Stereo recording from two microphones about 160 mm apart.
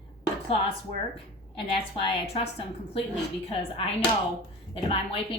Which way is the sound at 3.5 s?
35° left (ahead or behind).